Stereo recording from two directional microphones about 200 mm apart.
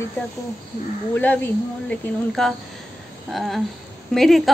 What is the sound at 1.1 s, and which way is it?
A woman's voice, 10° left (ahead or behind).